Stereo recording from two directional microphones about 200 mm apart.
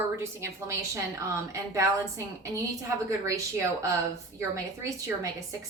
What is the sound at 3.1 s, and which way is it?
A woman's voice, 15° right (ahead or behind).